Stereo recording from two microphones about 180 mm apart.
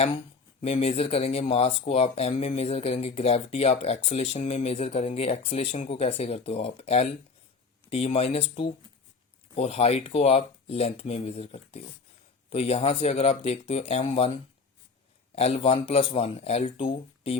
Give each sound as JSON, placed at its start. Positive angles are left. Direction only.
{"t": 0.6, "sound": "speech", "side_deg": 35}
{"t": 15.4, "sound": "speech", "side_deg": 35}